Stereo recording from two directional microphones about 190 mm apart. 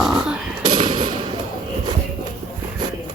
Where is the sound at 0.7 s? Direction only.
25° right (ahead or behind).